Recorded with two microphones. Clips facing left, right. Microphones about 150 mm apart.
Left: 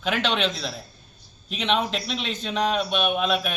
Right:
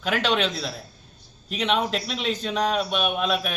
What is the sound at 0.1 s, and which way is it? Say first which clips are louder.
A man's voice: right 1 dB; 5° right (ahead or behind).